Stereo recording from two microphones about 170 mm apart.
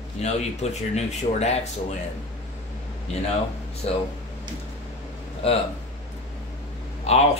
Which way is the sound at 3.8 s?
35° left (ahead or behind).